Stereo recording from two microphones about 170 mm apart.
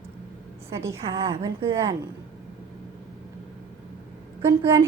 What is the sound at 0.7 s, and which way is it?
A woman's voice, 15° right (ahead or behind).